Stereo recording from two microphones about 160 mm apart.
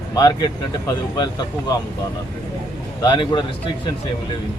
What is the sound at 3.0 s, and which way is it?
Speech, 30° left (ahead or behind).